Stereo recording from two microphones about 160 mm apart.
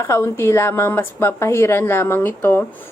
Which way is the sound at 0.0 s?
15° left (ahead or behind).